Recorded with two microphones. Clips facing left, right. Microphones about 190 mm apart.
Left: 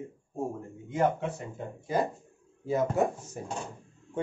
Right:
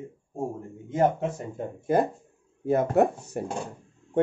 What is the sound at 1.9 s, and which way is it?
Speech, 50° right (ahead or behind).